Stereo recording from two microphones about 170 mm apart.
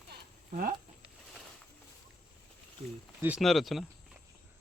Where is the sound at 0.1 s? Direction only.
55° right (ahead or behind).